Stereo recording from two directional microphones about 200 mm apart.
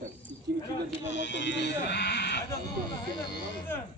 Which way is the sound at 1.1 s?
60° left (ahead or behind).